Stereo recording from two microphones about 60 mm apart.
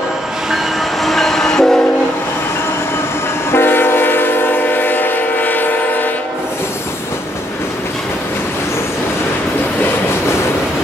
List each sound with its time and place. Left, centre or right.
1.0 s train: centre
3.5 s train: left